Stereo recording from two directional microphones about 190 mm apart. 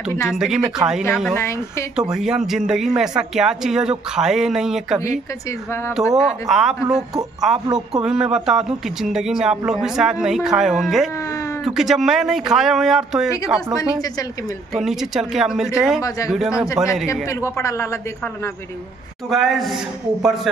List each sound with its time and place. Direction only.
0.3 s speech: 5° right (ahead or behind)
1.3 s a man's voice: 15° left (ahead or behind)
2.0 s speech: 5° right (ahead or behind)
14.7 s speech: centre (ahead or behind)
17.1 s a man's voice: 15° left (ahead or behind)
19.2 s speech: centre (ahead or behind)